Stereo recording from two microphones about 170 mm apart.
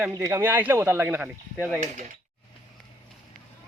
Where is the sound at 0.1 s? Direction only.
15° right (ahead or behind).